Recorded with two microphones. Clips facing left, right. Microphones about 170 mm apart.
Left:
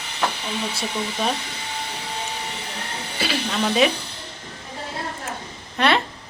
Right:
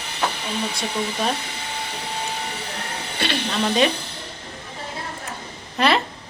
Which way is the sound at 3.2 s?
5° left (ahead or behind).